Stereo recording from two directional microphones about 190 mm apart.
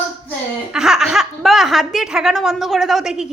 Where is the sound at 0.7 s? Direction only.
Centre (ahead or behind).